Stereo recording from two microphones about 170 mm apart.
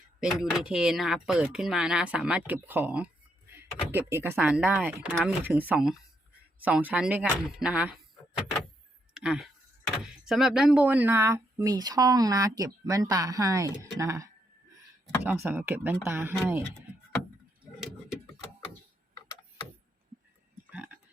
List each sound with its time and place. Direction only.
0.2 s speech: 5° right (ahead or behind)
15.4 s speech: 10° right (ahead or behind)
20.7 s a sound: 10° right (ahead or behind)